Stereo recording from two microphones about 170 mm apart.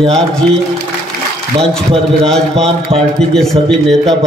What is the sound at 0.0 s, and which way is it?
Speech, 35° right (ahead or behind).